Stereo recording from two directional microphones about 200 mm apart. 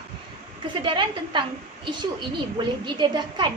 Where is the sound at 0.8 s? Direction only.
25° right (ahead or behind).